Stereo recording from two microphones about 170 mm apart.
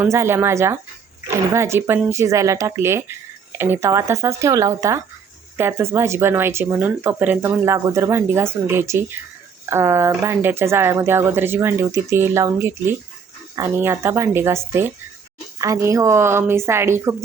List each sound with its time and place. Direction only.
0.0 s speech: 15° right (ahead or behind)
15.6 s speech: 20° right (ahead or behind)